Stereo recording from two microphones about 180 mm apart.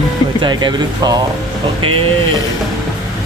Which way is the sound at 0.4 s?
25° right (ahead or behind).